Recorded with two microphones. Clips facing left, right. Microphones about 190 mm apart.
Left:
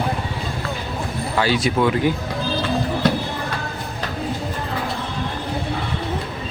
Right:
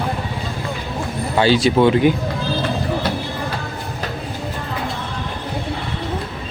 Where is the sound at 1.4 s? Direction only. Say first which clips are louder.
Right 5 dB; 30° right (ahead or behind).